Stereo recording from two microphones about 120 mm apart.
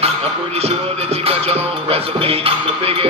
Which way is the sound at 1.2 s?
55° right (ahead or behind).